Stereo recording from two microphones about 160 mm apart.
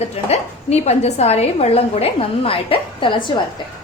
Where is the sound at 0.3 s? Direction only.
40° left (ahead or behind).